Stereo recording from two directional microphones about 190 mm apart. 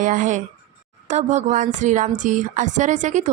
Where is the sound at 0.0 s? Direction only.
45° right (ahead or behind).